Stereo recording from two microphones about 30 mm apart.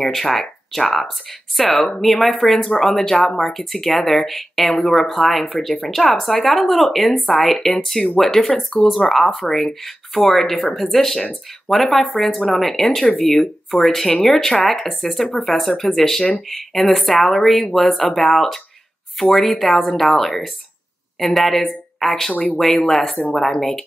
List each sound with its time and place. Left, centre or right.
0.0 s speech: centre
12.2 s speech: centre
12.5 s speech: centre